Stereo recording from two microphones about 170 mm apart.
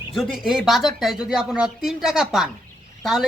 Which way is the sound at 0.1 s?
Centre (ahead or behind).